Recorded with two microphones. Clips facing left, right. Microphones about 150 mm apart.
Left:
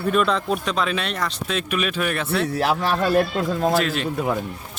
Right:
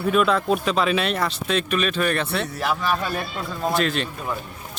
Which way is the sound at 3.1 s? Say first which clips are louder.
Left 9 dB; 80° left.